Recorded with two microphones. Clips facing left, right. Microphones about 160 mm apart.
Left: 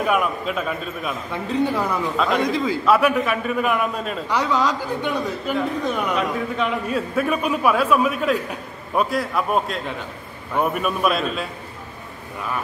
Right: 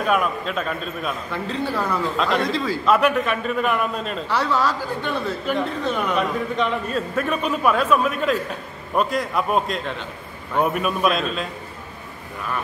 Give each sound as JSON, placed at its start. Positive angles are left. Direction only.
{"t": 0.0, "sound": "a man's voice", "side_deg": 5}
{"t": 1.3, "sound": "a man's voice", "side_deg": 15}
{"t": 2.1, "sound": "a man's voice", "side_deg": 5}
{"t": 2.5, "sound": "a man's voice", "side_deg": 20}
{"t": 2.9, "sound": "a man's voice", "side_deg": 10}